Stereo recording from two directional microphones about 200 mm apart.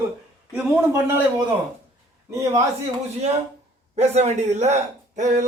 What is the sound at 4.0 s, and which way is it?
Speech, 35° right (ahead or behind).